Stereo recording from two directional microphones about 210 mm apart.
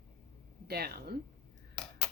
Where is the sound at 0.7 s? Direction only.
50° right (ahead or behind).